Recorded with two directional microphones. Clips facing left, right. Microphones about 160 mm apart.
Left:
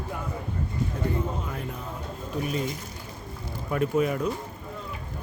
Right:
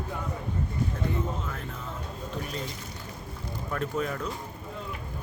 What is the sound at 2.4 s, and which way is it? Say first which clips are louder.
Speech: left 7 dB; 10° left (ahead or behind).